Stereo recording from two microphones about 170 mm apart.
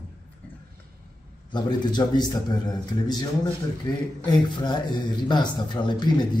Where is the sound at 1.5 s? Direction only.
25° left (ahead or behind).